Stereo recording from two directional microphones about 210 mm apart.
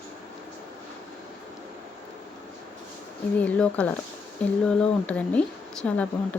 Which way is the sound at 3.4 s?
5° left (ahead or behind).